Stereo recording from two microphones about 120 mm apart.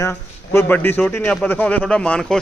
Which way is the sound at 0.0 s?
20° left (ahead or behind).